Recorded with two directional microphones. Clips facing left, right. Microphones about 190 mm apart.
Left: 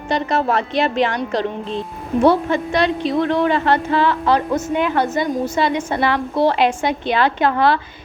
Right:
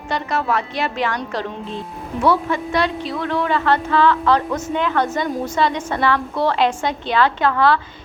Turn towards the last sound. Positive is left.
turn(degrees=15)  # may be behind; listen again after turning